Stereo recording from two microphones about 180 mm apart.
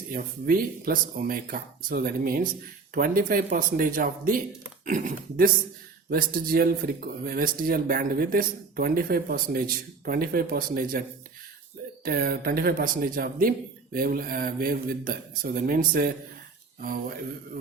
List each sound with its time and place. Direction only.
0.1 s speech: 55° right (ahead or behind)
12.0 s speech: 55° right (ahead or behind)